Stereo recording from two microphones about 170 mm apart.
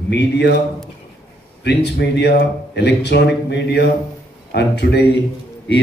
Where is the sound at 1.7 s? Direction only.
90° left.